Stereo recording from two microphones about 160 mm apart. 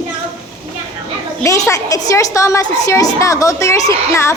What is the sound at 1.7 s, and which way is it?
A woman's voice, 20° left (ahead or behind).